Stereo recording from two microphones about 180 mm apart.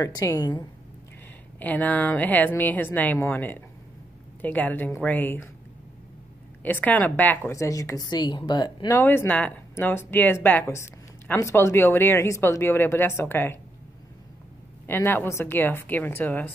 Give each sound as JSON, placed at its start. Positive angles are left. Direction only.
{"t": 0.0, "sound": "a woman's voice", "side_deg": 20}
{"t": 1.6, "sound": "a woman's voice", "side_deg": 10}
{"t": 6.6, "sound": "a woman's voice", "side_deg": 10}
{"t": 14.9, "sound": "a woman's voice", "side_deg": 10}